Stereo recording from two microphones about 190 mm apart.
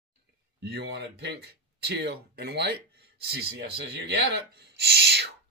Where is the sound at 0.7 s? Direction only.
60° right (ahead or behind).